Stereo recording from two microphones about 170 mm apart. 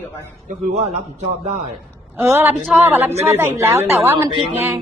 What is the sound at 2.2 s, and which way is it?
Speech, 15° right (ahead or behind).